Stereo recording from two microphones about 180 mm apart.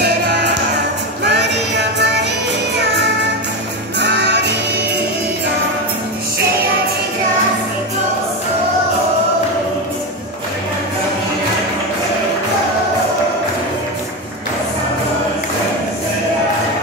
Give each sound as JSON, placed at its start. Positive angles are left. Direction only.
{"t": 0.0, "sound": "music", "side_deg": -70}